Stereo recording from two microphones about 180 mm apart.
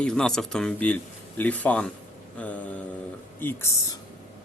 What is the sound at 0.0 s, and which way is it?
Speech, 5° left (ahead or behind).